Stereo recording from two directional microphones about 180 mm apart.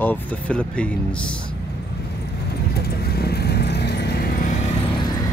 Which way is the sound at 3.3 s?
65° left (ahead or behind).